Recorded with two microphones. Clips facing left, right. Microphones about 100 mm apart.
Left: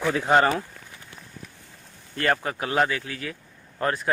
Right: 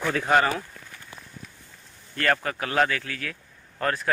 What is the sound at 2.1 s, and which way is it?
Speech, 20° left (ahead or behind).